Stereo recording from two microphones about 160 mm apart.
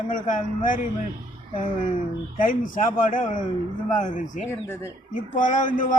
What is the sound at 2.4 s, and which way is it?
A man's voice, 55° left (ahead or behind).